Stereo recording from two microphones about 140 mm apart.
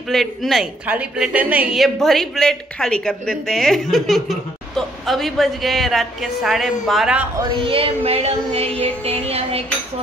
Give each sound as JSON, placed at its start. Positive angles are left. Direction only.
{"t": 0.1, "sound": "a woman's voice", "side_deg": 0}
{"t": 7.6, "sound": "child singing", "side_deg": -40}